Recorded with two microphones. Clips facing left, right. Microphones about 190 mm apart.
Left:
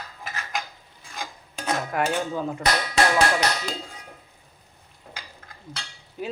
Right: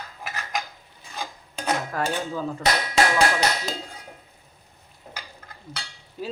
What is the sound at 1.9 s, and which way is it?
Speech, 15° left (ahead or behind).